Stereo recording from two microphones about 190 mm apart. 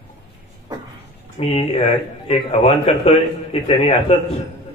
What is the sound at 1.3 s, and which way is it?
Speech, 35° left (ahead or behind).